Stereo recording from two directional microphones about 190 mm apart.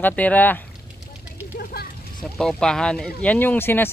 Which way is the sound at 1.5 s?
55° left (ahead or behind).